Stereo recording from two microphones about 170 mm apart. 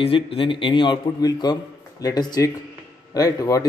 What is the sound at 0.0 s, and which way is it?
A man's voice, 35° left (ahead or behind).